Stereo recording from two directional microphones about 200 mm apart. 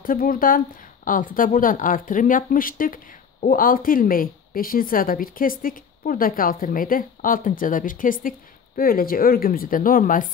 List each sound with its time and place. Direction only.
0.0 s speech: 45° left (ahead or behind)